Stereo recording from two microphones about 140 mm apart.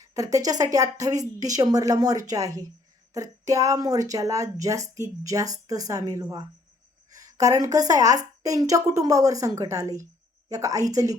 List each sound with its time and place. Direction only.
0.0 s speech: 25° right (ahead or behind)